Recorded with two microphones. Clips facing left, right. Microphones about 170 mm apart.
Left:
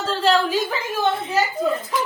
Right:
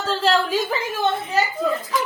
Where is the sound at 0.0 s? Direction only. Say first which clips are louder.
Left 1 dB; centre (ahead or behind).